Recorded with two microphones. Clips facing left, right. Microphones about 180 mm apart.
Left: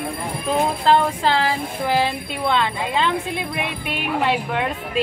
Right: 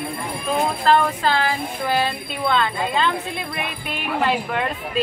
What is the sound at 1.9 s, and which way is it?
Speech, 15° left (ahead or behind).